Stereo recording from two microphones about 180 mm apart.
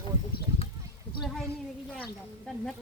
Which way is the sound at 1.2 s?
Centre (ahead or behind).